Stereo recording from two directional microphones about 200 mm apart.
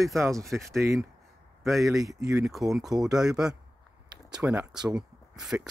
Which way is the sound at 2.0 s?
15° right (ahead or behind).